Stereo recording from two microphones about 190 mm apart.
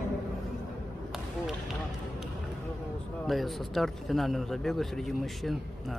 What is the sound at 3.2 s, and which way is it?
A man's voice, centre (ahead or behind).